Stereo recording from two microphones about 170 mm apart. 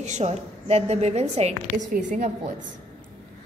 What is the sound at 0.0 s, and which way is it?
A woman's voice, 40° right (ahead or behind).